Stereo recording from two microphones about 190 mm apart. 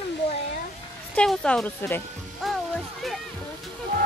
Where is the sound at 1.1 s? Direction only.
5° left (ahead or behind).